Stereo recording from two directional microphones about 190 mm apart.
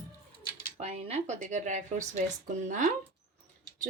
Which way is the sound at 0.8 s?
35° right (ahead or behind).